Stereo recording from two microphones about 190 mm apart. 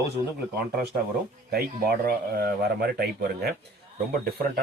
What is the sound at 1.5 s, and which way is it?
Speech, 55° right (ahead or behind).